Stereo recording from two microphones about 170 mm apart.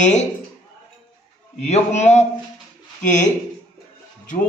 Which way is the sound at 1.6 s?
40° left (ahead or behind).